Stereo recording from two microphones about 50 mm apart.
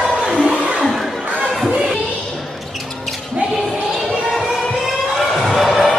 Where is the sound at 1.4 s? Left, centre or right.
Centre.